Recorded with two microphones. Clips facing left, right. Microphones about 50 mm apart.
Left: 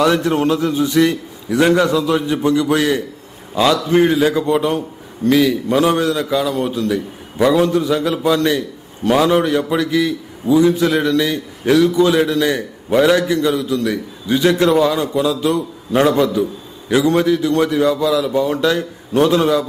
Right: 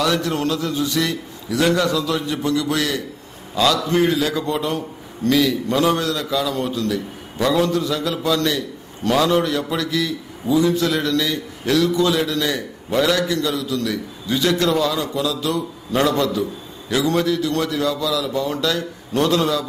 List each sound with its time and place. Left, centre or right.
0.0 s a man's voice: left